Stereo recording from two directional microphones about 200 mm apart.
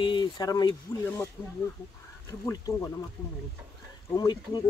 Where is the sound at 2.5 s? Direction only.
15° left (ahead or behind).